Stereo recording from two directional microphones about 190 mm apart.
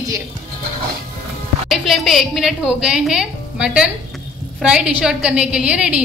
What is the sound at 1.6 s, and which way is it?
A woman's voice, centre (ahead or behind).